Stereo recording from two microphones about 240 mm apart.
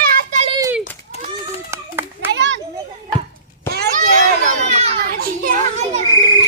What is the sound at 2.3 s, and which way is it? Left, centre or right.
Children playing, right.